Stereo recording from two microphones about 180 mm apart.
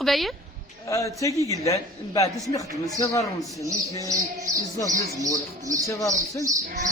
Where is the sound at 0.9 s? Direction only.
20° left (ahead or behind).